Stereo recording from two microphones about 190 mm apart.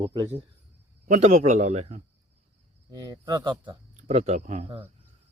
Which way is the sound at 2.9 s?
20° right (ahead or behind).